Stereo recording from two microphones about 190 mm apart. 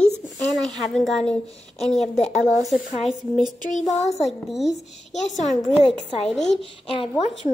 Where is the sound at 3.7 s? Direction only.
40° left (ahead or behind).